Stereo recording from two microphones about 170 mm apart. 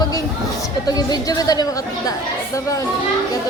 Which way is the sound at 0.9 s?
20° left (ahead or behind).